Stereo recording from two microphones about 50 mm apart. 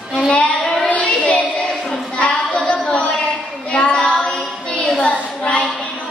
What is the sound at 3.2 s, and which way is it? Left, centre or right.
Child singing, left.